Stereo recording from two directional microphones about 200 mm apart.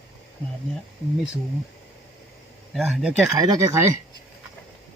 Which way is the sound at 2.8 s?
5° right (ahead or behind).